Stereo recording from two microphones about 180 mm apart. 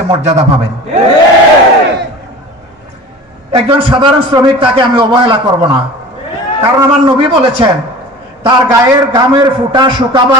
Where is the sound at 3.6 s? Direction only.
25° right (ahead or behind).